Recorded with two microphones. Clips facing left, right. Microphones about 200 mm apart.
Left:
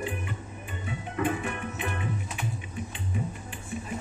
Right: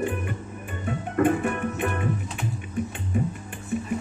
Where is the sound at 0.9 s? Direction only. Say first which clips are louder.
Right 8 dB; 50° right (ahead or behind).